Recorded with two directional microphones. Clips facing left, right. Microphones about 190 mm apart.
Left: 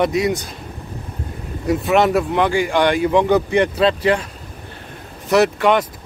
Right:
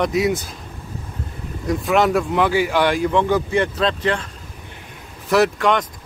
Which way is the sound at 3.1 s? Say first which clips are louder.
Left 3 dB; 15° left (ahead or behind).